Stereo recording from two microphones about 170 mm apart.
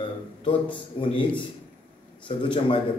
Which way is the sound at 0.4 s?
30° left (ahead or behind).